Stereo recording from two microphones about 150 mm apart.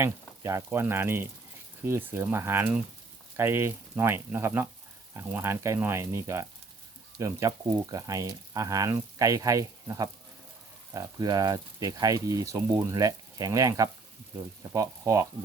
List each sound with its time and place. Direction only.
0.0 s speech: 20° right (ahead or behind)